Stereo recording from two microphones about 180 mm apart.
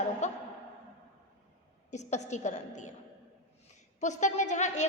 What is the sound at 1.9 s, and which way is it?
A woman's voice, 40° left (ahead or behind).